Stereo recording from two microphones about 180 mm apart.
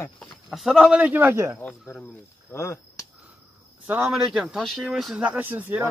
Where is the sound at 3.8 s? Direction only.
10° right (ahead or behind).